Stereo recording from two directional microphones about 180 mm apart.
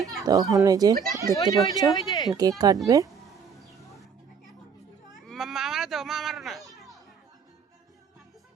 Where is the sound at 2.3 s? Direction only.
20° right (ahead or behind).